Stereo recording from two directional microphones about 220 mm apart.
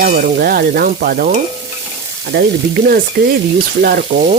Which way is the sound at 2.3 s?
50° right (ahead or behind).